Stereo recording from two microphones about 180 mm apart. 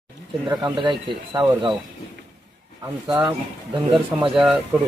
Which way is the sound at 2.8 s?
20° right (ahead or behind).